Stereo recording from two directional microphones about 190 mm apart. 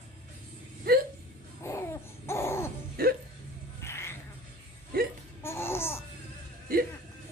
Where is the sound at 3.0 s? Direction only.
55° right (ahead or behind).